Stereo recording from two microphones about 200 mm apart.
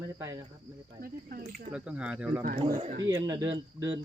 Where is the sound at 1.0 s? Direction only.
45° right (ahead or behind).